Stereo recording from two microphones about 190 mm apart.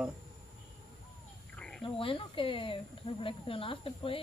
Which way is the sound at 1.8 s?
30° left (ahead or behind).